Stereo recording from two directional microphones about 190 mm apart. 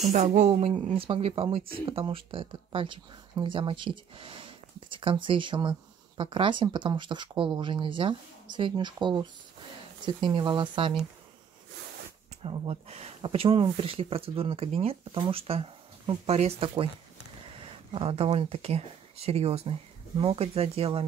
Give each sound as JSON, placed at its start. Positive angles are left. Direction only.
{"t": 0.1, "sound": "speech", "side_deg": -40}
{"t": 12.4, "sound": "speech", "side_deg": -30}
{"t": 17.9, "sound": "speech", "side_deg": -30}